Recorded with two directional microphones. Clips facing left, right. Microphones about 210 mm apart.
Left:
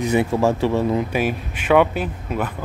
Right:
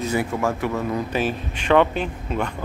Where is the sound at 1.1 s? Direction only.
10° left (ahead or behind).